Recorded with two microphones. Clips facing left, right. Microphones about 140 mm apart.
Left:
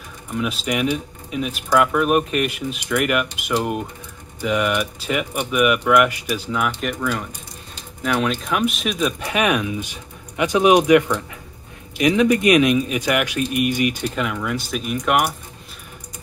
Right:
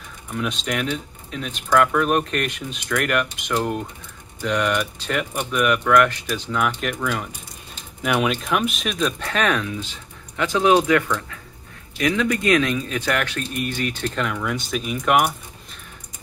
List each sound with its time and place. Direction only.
0.3 s speech: 5° left (ahead or behind)
9.2 s speech: 15° left (ahead or behind)